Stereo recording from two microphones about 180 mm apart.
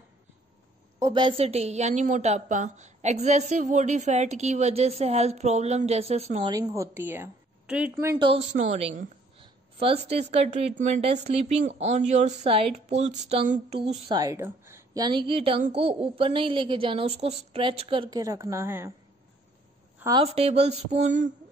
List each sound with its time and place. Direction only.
0.9 s a woman's voice: 20° right (ahead or behind)
6.7 s a woman's voice: 15° right (ahead or behind)
8.0 s a woman's voice: 15° right (ahead or behind)
8.7 s a sound: 35° right (ahead or behind)
10.0 s a woman's voice: 35° right (ahead or behind)
14.1 s a woman's voice: 15° right (ahead or behind)
18.2 s a woman's voice: 15° right (ahead or behind)
20.0 s a woman's voice: 20° right (ahead or behind)
20.2 s a woman's voice: 35° right (ahead or behind)